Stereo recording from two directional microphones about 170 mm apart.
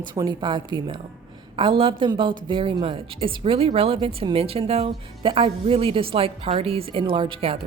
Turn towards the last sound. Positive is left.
turn(degrees=-30)  # may be behind; listen again after turning